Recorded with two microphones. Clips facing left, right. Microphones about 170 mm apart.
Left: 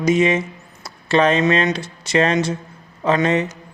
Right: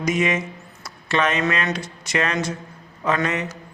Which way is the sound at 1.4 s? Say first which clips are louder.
Left 6 dB; 25° left (ahead or behind).